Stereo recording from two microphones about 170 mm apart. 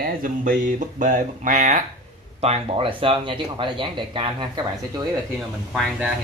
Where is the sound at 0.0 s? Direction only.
55° right (ahead or behind).